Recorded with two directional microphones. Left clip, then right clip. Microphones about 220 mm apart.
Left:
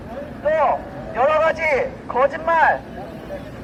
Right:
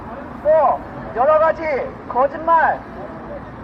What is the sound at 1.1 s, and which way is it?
Speech, 30° left (ahead or behind).